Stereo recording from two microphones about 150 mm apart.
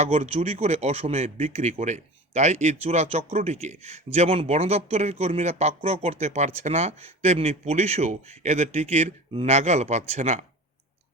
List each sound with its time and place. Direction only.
0.0 s speech: 45° right (ahead or behind)